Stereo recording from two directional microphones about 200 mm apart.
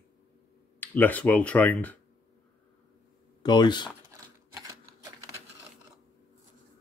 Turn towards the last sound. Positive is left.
turn(degrees=-20)  # may be behind; listen again after turning